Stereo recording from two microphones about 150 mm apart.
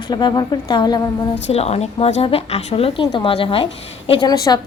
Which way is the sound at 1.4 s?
45° left (ahead or behind).